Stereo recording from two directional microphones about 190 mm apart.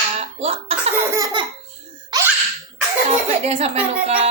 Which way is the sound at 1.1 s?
20° right (ahead or behind).